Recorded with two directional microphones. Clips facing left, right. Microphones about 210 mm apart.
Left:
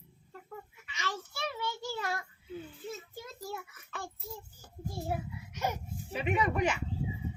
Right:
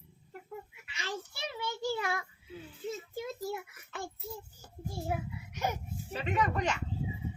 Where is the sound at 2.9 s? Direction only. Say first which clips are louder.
Right 5 dB; 15° right (ahead or behind).